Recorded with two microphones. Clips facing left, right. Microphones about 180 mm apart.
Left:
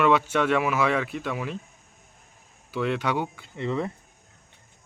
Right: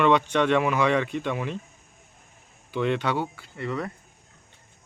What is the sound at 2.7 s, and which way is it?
Speech, 5° left (ahead or behind).